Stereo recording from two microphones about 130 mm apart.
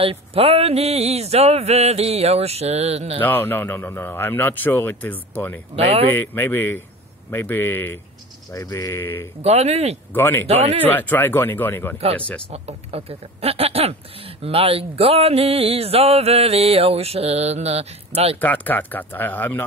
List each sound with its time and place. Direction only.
0.0 s speech: 45° right (ahead or behind)
3.2 s speech: 15° left (ahead or behind)
5.8 s speech: 50° right (ahead or behind)
6.1 s speech: 15° left (ahead or behind)
8.5 s speech: 30° left (ahead or behind)
9.4 s speech: 55° right (ahead or behind)
10.1 s speech: 15° left (ahead or behind)
10.4 s speech: 50° right (ahead or behind)
10.8 s speech: 15° left (ahead or behind)
12.4 s speech: 50° right (ahead or behind)
18.4 s speech: 15° left (ahead or behind)